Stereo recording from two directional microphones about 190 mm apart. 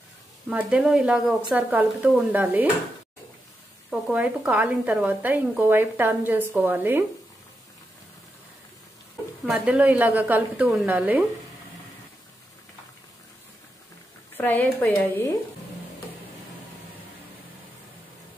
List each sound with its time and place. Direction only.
0.5 s speech: 5° right (ahead or behind)
3.9 s speech: 5° right (ahead or behind)
9.5 s speech: 5° right (ahead or behind)
14.3 s speech: 10° left (ahead or behind)